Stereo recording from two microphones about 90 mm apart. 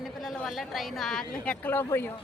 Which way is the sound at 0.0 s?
Centre (ahead or behind).